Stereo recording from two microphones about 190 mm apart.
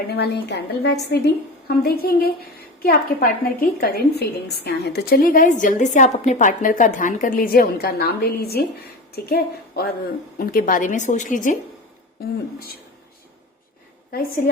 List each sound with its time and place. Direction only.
0.1 s a woman's voice: 60° left (ahead or behind); by 11.5 s 40° left (ahead or behind)
14.1 s a woman's voice: 50° left (ahead or behind)